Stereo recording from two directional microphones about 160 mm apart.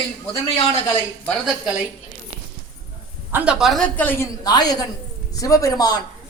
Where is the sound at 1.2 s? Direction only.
5° left (ahead or behind).